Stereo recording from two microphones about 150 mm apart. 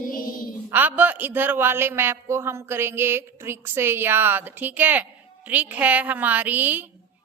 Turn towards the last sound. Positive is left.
turn(degrees=-10)  # may be behind; listen again after turning